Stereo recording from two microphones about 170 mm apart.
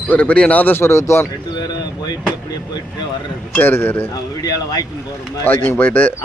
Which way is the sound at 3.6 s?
15° left (ahead or behind).